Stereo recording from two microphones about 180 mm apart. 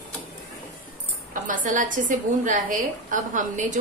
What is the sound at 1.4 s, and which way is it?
A woman's voice, 45° right (ahead or behind).